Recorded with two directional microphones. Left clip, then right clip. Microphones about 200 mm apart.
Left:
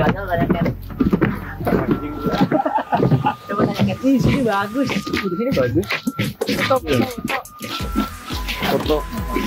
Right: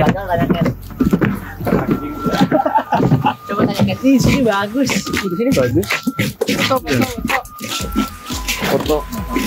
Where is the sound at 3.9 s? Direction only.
25° right (ahead or behind); by 5.7 s 45° right (ahead or behind).